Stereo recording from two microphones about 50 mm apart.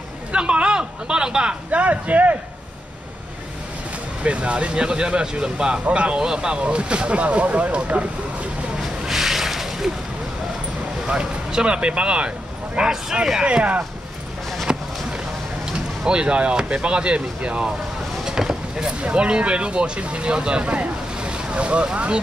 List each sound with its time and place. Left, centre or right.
0.3 s speech: right
4.2 s speech: right
9.0 s a sound: centre
11.1 s speech: centre
14.7 s basketball bounce: centre
16.1 s speech: right
18.2 s speech: centre